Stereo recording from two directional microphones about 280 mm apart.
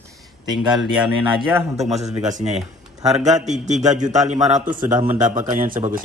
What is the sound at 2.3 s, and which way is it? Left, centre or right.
A man's voice, right.